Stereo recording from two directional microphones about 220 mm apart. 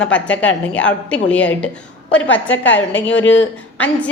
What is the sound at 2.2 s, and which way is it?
A woman's voice, 60° left (ahead or behind).